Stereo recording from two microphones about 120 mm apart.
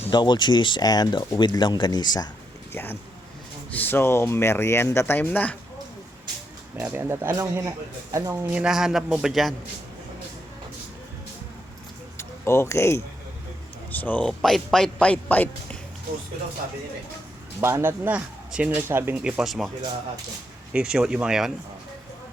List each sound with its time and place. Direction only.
0.1 s speech: 40° left (ahead or behind)
1.4 s speech: 40° left (ahead or behind)
2.7 s speech: 20° left (ahead or behind)
6.7 s speech: 15° right (ahead or behind)
8.4 s speech: 10° right (ahead or behind)
12.1 s a sound: 25° left (ahead or behind)
13.9 s speech: 15° left (ahead or behind)
17.6 s speech: 20° right (ahead or behind); by 19.7 s centre (ahead or behind)
20.7 s speech: 5° right (ahead or behind)